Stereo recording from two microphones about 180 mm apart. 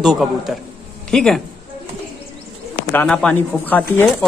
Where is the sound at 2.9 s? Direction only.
10° left (ahead or behind).